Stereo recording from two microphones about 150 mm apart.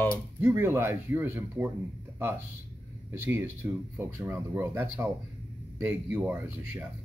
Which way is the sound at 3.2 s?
15° right (ahead or behind).